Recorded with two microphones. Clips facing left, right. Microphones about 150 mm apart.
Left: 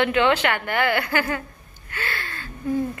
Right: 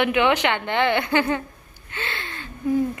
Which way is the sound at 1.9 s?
20° right (ahead or behind).